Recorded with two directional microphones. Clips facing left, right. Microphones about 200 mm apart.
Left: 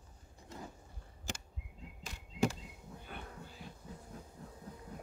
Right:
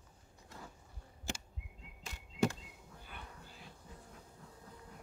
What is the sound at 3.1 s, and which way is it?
Music, 45° left (ahead or behind).